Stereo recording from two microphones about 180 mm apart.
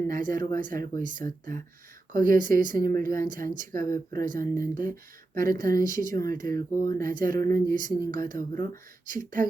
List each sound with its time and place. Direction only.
0.1 s speech: 50° right (ahead or behind)
6.5 s speech: 20° left (ahead or behind)
7.0 s speech: 50° right (ahead or behind)